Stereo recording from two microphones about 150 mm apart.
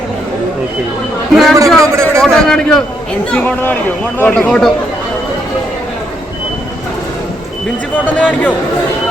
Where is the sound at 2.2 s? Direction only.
5° left (ahead or behind).